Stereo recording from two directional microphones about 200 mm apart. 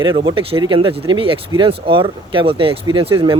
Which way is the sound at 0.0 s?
25° right (ahead or behind).